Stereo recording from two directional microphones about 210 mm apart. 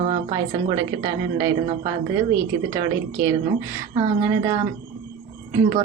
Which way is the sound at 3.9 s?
15° right (ahead or behind).